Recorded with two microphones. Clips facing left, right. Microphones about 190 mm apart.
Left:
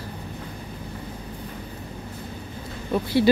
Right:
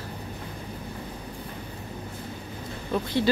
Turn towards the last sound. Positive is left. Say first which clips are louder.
# left 4 dB
turn(degrees=10)  # may be behind; listen again after turning